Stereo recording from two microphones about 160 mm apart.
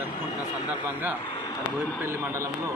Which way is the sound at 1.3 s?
25° left (ahead or behind).